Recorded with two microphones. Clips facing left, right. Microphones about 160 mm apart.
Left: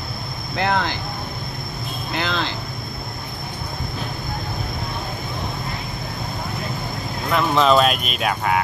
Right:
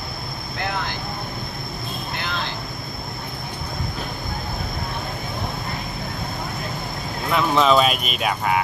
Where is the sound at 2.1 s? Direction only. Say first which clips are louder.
Left 6 dB; 90° left.